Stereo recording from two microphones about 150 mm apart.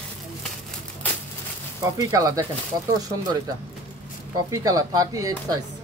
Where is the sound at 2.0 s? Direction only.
25° right (ahead or behind).